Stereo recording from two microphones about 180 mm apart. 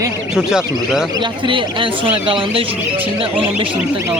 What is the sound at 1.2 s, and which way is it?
Speech, 25° right (ahead or behind).